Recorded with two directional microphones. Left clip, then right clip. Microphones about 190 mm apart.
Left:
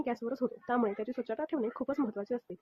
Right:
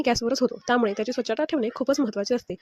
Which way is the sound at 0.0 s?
35° right (ahead or behind).